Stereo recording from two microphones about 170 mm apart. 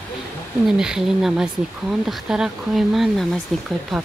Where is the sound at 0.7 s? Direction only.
5° right (ahead or behind).